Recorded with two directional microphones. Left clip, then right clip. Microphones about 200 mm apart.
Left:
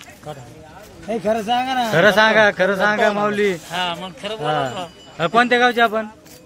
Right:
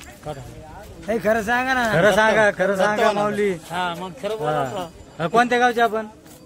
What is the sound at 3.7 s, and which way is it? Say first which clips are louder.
Speech: left 2 dB; 50° right (ahead or behind).